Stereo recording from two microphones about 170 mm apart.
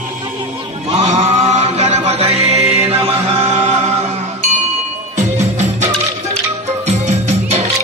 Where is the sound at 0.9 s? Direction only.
45° right (ahead or behind).